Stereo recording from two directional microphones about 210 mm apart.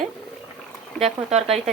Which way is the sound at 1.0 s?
30° right (ahead or behind).